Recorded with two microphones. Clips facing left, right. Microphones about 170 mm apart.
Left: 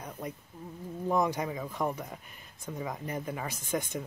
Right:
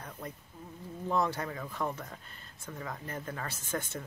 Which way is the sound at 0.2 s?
15° left (ahead or behind).